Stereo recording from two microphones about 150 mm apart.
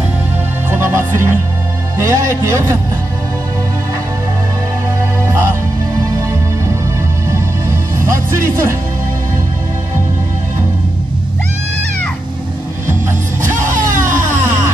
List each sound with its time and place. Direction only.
0.7 s music: 15° right (ahead or behind)
2.0 s a man's voice: 20° right (ahead or behind)
5.2 s music: 20° right (ahead or behind)
8.0 s speech: 20° right (ahead or behind)
13.6 s music: 60° right (ahead or behind)